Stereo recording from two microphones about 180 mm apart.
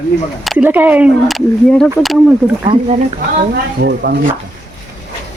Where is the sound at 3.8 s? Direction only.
65° right (ahead or behind).